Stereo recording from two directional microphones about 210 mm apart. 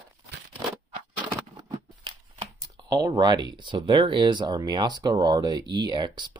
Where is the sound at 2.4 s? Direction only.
15° right (ahead or behind).